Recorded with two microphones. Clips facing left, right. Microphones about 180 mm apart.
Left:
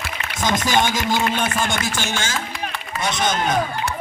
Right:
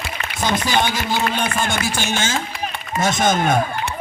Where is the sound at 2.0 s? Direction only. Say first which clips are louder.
Right 3 dB; 20° right (ahead or behind).